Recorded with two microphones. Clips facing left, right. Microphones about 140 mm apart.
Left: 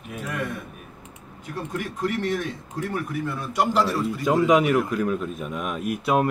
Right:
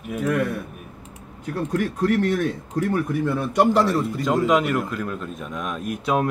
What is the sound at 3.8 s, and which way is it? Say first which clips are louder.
Speech: right 3 dB; 20° right (ahead or behind).